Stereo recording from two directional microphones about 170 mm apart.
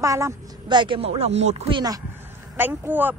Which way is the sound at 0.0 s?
20° right (ahead or behind).